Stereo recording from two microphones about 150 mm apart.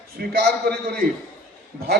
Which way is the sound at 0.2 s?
80° right.